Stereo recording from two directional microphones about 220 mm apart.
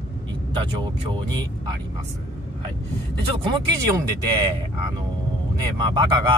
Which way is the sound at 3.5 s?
20° right (ahead or behind).